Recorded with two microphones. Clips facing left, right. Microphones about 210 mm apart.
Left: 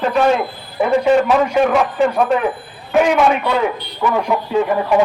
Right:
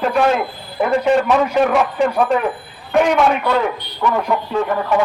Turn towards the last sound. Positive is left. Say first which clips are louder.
# left 3 dB
turn(degrees=15)  # may be behind; listen again after turning